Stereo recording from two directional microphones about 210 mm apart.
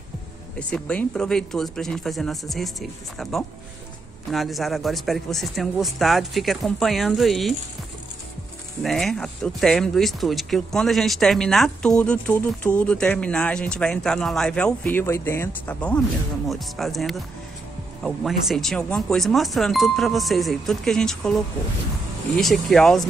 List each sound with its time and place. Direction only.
0.6 s speech: 5° left (ahead or behind)
8.8 s speech: centre (ahead or behind)
22.4 s speech: centre (ahead or behind)